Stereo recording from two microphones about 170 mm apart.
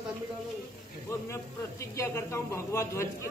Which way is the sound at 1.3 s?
15° left (ahead or behind).